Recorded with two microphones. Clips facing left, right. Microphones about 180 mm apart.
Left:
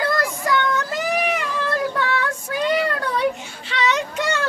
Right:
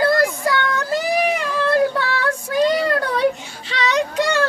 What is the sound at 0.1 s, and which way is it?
Child singing, 35° right (ahead or behind).